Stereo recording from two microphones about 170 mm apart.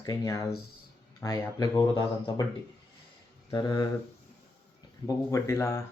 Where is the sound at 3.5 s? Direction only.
25° left (ahead or behind).